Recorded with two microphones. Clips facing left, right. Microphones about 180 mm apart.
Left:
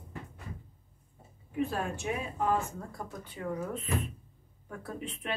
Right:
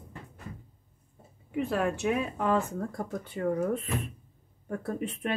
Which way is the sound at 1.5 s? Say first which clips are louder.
Right 4 dB; 70° right (ahead or behind).